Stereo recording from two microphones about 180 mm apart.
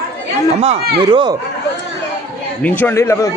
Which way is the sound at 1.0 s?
25° right (ahead or behind).